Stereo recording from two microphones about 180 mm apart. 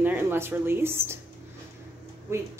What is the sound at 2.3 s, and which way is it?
Speech, 15° right (ahead or behind).